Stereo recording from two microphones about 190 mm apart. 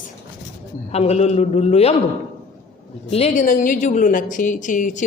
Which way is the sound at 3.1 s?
35° left (ahead or behind).